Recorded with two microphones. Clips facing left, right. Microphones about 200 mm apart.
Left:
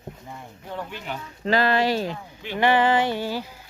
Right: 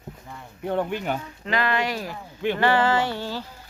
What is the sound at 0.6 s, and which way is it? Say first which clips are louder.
Speech: right 9 dB; 60° right (ahead or behind).